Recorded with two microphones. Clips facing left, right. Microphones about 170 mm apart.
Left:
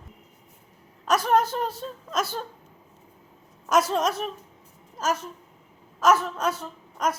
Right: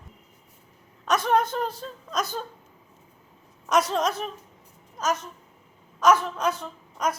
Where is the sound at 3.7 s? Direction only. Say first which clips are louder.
Left 1 dB; 5° left (ahead or behind).